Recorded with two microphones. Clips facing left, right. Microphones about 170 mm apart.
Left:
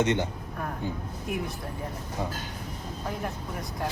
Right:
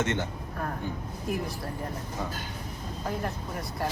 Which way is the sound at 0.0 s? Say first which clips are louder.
Left 4 dB; 15° left (ahead or behind).